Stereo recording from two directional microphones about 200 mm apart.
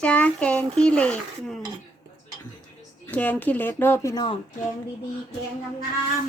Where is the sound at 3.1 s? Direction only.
10° left (ahead or behind).